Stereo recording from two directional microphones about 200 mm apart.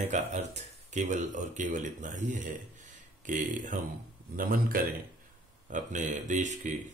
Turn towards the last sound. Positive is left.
turn(degrees=-35)  # may be behind; listen again after turning